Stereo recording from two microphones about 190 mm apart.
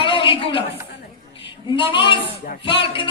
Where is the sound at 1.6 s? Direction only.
25° left (ahead or behind).